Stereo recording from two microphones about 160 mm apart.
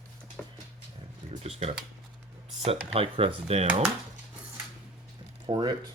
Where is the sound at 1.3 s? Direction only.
40° right (ahead or behind).